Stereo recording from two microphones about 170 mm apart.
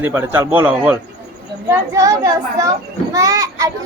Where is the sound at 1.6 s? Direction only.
20° right (ahead or behind).